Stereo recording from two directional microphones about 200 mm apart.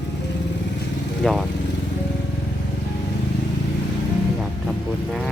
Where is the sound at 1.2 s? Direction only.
5° left (ahead or behind).